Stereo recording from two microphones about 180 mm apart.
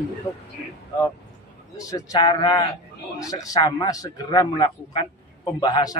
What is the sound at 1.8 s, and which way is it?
A man's voice, 20° left (ahead or behind).